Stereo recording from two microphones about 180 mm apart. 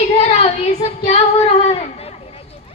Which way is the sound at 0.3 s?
35° left (ahead or behind).